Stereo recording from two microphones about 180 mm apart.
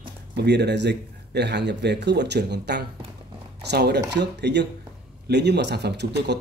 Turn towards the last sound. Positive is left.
turn(degrees=-70)  # may be behind; listen again after turning